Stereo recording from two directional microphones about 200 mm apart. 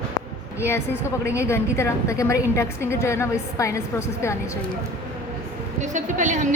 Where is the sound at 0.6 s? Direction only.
10° left (ahead or behind).